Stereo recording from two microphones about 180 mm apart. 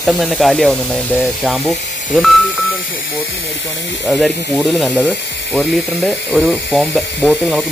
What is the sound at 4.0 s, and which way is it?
Speech, centre (ahead or behind).